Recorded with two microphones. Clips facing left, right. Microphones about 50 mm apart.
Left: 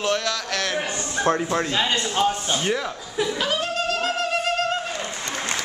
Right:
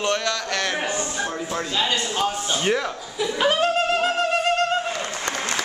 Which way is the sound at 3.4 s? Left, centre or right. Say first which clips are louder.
Right 5 dB; right.